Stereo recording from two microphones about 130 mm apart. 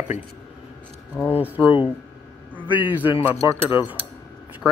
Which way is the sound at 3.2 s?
20° right (ahead or behind).